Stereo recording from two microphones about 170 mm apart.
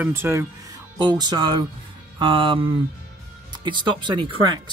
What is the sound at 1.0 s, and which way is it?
Speech, 25° right (ahead or behind).